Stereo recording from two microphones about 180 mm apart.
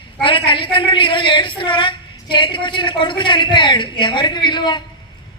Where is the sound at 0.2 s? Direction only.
30° left (ahead or behind).